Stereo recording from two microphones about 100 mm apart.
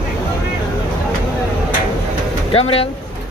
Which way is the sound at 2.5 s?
80° left.